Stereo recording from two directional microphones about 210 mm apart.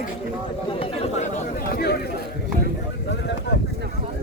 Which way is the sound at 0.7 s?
30° left (ahead or behind).